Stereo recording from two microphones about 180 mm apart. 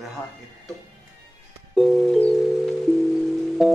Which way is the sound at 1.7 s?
Centre (ahead or behind).